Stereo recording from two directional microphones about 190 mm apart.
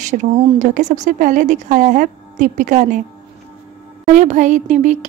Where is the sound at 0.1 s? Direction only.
40° right (ahead or behind).